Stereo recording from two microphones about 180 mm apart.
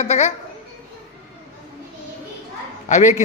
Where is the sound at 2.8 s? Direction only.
40° left (ahead or behind).